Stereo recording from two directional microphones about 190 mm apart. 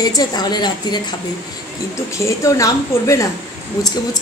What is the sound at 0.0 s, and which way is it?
A woman's voice, 20° left (ahead or behind).